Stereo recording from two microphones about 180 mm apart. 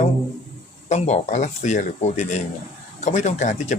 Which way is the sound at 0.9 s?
40° left (ahead or behind).